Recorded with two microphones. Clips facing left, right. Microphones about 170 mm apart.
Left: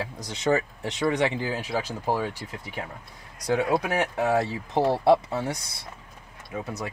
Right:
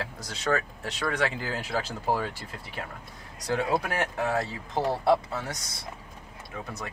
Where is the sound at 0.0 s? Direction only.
20° left (ahead or behind).